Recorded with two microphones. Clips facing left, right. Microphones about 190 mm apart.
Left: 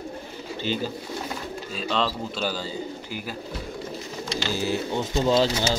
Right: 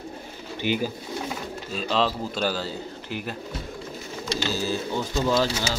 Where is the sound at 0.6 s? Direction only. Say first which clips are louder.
Right 2 dB; 15° right (ahead or behind).